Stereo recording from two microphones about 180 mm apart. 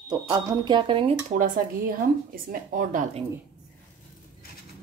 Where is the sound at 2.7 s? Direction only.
45° right (ahead or behind).